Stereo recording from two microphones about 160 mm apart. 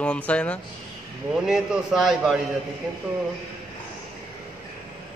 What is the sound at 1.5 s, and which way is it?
Speech, 5° right (ahead or behind).